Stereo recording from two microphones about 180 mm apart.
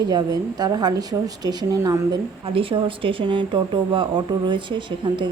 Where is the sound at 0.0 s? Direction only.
20° right (ahead or behind).